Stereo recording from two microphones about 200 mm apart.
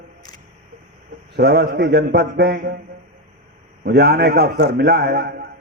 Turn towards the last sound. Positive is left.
turn(degrees=-50)  # may be behind; listen again after turning